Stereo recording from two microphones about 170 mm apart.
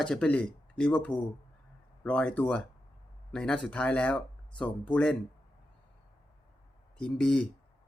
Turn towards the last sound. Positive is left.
turn(degrees=5)  # may be behind; listen again after turning